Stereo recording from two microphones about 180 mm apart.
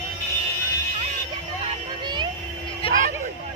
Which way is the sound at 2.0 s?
25° right (ahead or behind).